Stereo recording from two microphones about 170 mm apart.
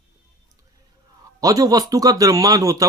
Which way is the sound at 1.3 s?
20° right (ahead or behind).